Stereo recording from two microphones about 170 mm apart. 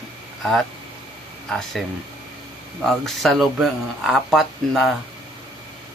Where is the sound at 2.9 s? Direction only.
Centre (ahead or behind).